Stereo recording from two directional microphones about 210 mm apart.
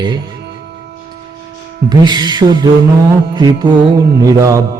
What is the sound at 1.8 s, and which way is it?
A man's voice, 20° right (ahead or behind).